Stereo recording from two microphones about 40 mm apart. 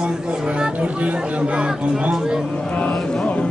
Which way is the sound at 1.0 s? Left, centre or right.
Right.